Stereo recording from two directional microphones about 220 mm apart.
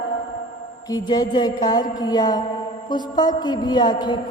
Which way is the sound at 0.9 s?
15° left (ahead or behind).